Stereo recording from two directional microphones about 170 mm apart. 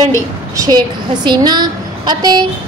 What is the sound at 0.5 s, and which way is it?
A woman's voice, 20° right (ahead or behind).